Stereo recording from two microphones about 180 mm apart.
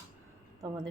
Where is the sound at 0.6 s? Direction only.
25° right (ahead or behind).